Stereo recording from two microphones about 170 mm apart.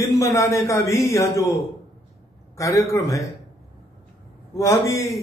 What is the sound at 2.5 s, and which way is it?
Speech, 20° left (ahead or behind).